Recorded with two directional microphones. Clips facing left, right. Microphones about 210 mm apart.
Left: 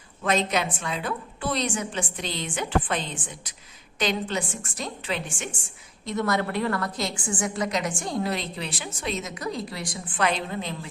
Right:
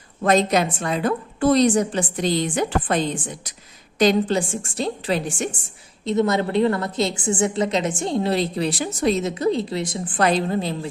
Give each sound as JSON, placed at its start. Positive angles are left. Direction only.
{"t": 0.2, "sound": "a woman's voice", "side_deg": -40}
{"t": 6.1, "sound": "a woman's voice", "side_deg": -20}
{"t": 10.2, "sound": "a woman's voice", "side_deg": -35}